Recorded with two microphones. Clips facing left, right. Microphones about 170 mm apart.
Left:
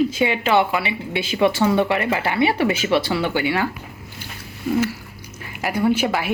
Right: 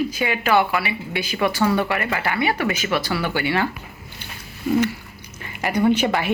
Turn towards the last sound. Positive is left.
turn(degrees=5)  # may be behind; listen again after turning